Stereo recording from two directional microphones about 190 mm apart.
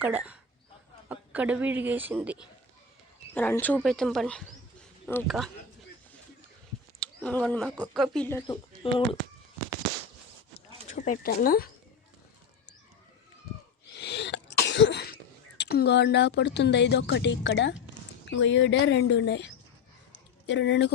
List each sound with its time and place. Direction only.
0.0 s speech: 10° right (ahead or behind)
3.3 s speech: 10° left (ahead or behind)
7.0 s speech: 5° left (ahead or behind)
8.4 s speech: 25° left (ahead or behind)
10.8 s speech: 40° left (ahead or behind)
13.9 s cough: 60° left (ahead or behind)
18.3 s speech: 75° left (ahead or behind)
20.5 s speech: 70° left (ahead or behind)